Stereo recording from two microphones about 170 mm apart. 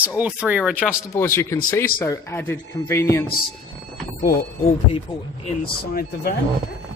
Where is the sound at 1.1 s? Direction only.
15° left (ahead or behind).